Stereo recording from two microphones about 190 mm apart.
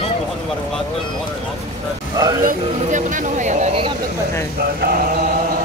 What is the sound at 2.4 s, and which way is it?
Speech, 45° right (ahead or behind).